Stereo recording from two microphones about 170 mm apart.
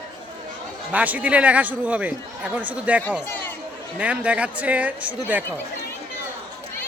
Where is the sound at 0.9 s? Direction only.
10° right (ahead or behind).